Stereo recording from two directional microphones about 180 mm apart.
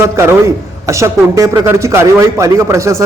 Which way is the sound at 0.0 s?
15° right (ahead or behind).